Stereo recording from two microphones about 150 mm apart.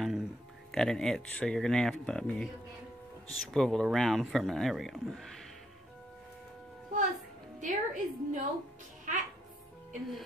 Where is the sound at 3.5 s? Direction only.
Centre (ahead or behind).